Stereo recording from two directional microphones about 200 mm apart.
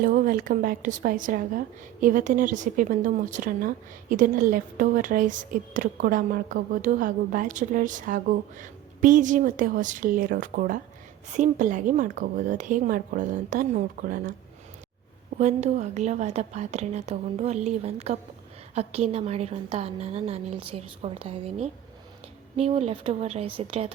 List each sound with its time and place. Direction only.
0.0 s speech: 45° right (ahead or behind)
15.4 s speech: 35° right (ahead or behind)